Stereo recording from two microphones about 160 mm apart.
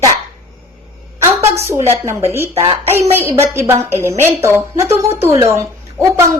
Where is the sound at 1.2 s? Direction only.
15° right (ahead or behind).